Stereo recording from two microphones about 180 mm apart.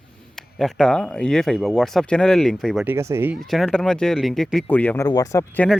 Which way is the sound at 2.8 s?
15° right (ahead or behind).